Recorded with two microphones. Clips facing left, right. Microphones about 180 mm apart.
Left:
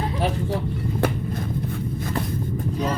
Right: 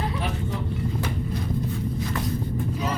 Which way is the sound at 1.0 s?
50° left (ahead or behind).